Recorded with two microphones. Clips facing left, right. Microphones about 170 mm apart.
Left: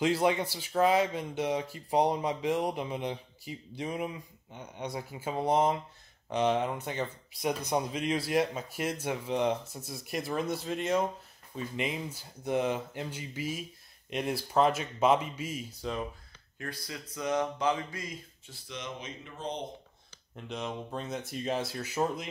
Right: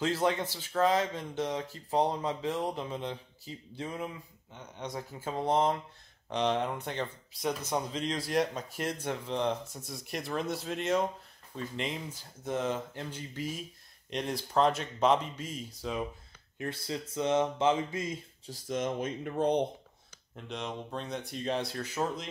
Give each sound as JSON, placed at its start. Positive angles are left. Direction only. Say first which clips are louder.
{"t": 0.0, "sound": "speech", "louder": "left 2 dB", "side_deg": 10}
{"t": 7.4, "sound": "speech", "louder": "left 2 dB", "side_deg": 15}
{"t": 16.5, "sound": "mantra", "louder": "right 5 dB", "side_deg": -25}
{"t": 18.5, "sound": "speech", "louder": "right 9 dB", "side_deg": -45}
{"t": 20.3, "sound": "speech", "louder": "left 1 dB", "side_deg": 0}